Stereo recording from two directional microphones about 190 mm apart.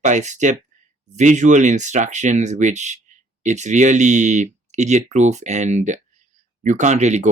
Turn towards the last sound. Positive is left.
turn(degrees=-35)  # may be behind; listen again after turning